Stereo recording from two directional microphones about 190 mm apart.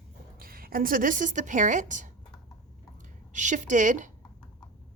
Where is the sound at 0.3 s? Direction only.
50° right (ahead or behind).